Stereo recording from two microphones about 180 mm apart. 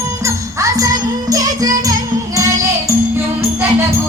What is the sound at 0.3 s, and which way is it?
Music, 15° right (ahead or behind).